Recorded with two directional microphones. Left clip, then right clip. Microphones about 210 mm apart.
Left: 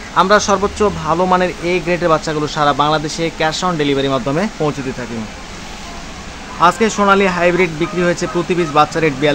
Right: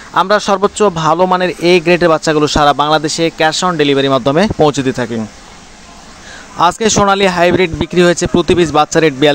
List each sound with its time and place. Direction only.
0.1 s speech: 40° right (ahead or behind)
6.6 s speech: 45° right (ahead or behind)